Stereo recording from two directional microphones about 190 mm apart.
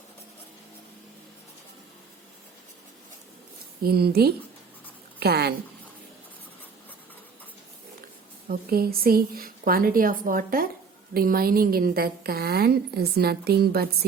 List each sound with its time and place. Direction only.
3.8 s a woman's voice: 55° right (ahead or behind)
8.4 s a woman's voice: 50° right (ahead or behind)